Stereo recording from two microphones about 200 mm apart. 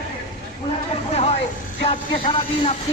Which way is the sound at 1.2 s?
30° left (ahead or behind).